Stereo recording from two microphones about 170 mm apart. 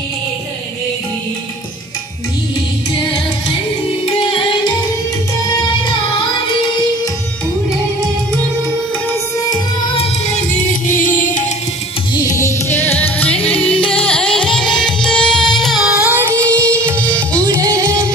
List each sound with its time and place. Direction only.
4.0 s music: 30° left (ahead or behind)
9.9 s music: 40° left (ahead or behind)
12.2 s music: 20° left (ahead or behind); by 18.1 s 15° right (ahead or behind)